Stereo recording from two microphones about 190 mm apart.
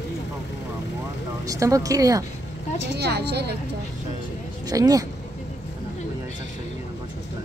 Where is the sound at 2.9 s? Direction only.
60° right (ahead or behind).